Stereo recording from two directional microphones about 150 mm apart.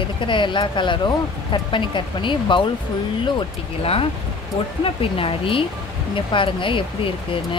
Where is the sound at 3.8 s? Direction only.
40° left (ahead or behind).